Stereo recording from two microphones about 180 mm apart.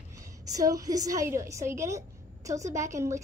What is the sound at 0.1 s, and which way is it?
A woman's voice, 20° right (ahead or behind).